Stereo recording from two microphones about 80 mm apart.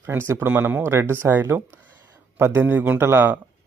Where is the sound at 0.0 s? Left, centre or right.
Right.